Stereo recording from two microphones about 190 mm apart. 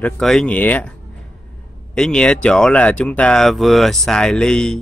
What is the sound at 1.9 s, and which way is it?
Speech, 5° left (ahead or behind).